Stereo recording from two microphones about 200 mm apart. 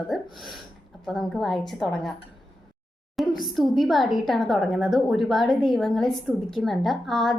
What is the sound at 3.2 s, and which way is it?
A woman's voice, centre (ahead or behind).